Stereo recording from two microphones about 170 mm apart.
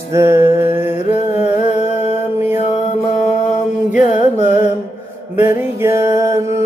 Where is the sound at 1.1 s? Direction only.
40° left (ahead or behind).